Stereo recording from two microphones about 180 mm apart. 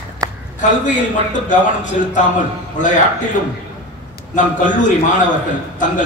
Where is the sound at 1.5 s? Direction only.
45° left (ahead or behind).